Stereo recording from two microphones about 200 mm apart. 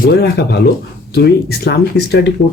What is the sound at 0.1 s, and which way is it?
Speech, 55° left (ahead or behind).